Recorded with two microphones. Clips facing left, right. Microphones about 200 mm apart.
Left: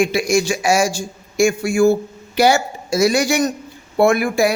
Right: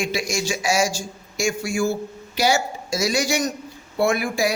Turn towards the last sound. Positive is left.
turn(degrees=55)  # may be behind; listen again after turning